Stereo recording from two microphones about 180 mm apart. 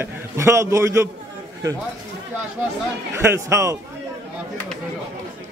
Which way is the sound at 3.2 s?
15° right (ahead or behind).